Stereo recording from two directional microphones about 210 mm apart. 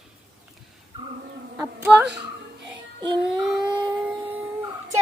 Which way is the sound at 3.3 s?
Centre (ahead or behind).